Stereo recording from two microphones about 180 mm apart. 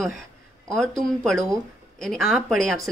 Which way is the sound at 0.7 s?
Centre (ahead or behind).